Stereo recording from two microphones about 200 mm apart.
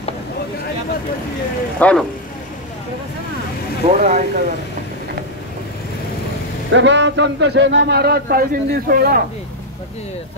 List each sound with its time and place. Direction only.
1.8 s speech: 5° left (ahead or behind)
3.8 s speech: 35° right (ahead or behind)
6.7 s speech: 65° right (ahead or behind); by 9.2 s 50° right (ahead or behind)